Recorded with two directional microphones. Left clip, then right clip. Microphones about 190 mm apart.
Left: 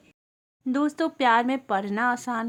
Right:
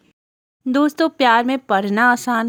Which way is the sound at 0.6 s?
35° right (ahead or behind).